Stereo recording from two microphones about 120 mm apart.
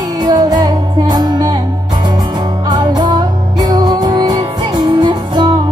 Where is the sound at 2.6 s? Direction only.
35° right (ahead or behind).